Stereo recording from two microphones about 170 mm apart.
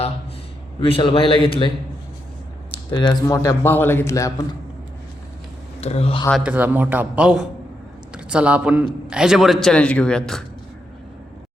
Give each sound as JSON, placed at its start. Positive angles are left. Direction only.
{"t": 0.8, "sound": "a man's voice", "side_deg": 35}
{"t": 2.9, "sound": "speech", "side_deg": 30}
{"t": 3.2, "sound": "a man's voice", "side_deg": 20}
{"t": 5.8, "sound": "a man's voice", "side_deg": 35}
{"t": 6.3, "sound": "a man's voice", "side_deg": -10}